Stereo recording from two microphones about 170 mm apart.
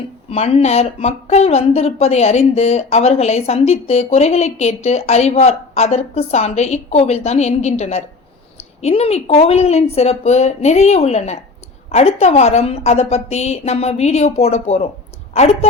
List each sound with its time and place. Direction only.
0.3 s speech: 35° left (ahead or behind)